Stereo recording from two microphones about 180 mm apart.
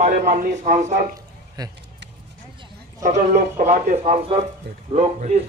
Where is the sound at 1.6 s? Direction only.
20° right (ahead or behind).